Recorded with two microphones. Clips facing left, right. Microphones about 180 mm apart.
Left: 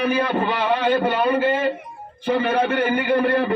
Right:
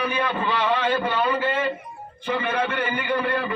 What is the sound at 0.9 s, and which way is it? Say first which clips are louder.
Speech: left 4 dB; 60° left (ahead or behind).